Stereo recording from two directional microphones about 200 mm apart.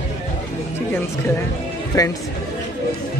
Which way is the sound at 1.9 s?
15° left (ahead or behind).